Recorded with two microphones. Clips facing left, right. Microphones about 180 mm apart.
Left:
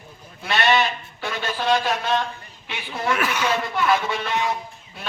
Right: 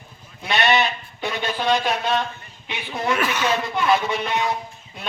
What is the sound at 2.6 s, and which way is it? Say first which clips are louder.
A man's voice: right 1 dB; 15° right (ahead or behind).